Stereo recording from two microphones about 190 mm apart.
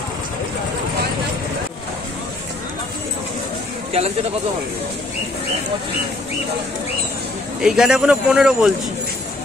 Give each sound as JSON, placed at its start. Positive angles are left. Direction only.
{"t": 3.9, "sound": "speech", "side_deg": -35}
{"t": 7.6, "sound": "speech", "side_deg": -5}